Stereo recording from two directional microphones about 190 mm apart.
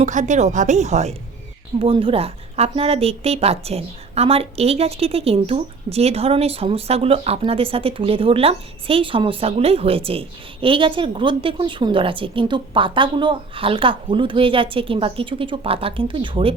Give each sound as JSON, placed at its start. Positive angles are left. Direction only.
{"t": 0.0, "sound": "a woman's voice", "side_deg": -40}